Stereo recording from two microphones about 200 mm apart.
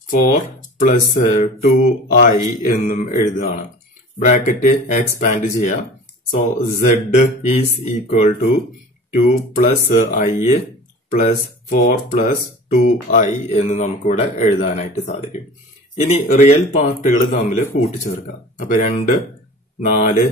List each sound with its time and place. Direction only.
0.7 s speech: 40° left (ahead or behind)